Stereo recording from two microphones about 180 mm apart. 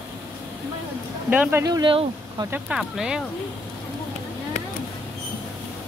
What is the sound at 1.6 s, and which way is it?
Speech, 25° right (ahead or behind).